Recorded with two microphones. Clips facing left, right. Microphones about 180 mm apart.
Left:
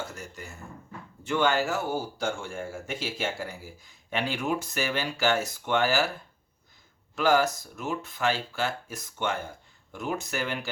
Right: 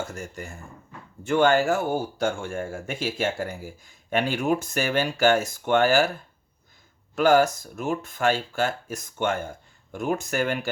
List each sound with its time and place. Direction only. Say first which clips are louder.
0.0 s speech: right 5 dB; 50° right (ahead or behind)
7.2 s speech: right 5 dB; 50° right (ahead or behind)